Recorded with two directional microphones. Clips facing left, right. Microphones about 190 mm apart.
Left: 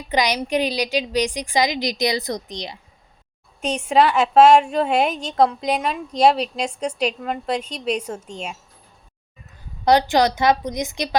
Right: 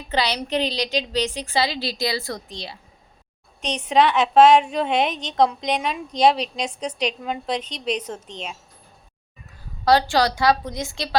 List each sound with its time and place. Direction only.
0.1 s a woman's voice: 15° left (ahead or behind)
3.6 s a woman's voice: 5° left (ahead or behind)
9.8 s a woman's voice: 20° left (ahead or behind)